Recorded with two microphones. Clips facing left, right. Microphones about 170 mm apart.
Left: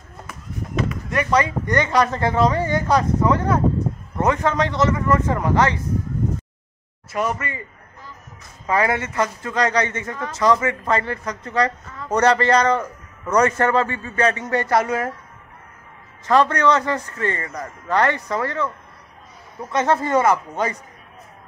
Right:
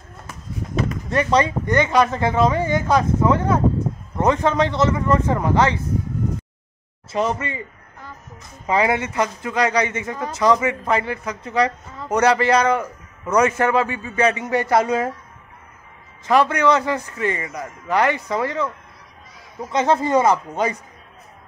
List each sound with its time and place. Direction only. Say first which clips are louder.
1.1 s speech: right 2 dB; 25° right (ahead or behind)
7.1 s speech: right 2 dB; 25° right (ahead or behind)
8.6 s a man's voice: right 1 dB; 15° right (ahead or behind)
16.3 s a man's voice: even; 10° right (ahead or behind)